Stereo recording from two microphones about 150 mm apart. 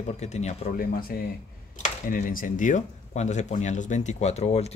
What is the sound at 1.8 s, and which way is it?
Speech, 65° left (ahead or behind).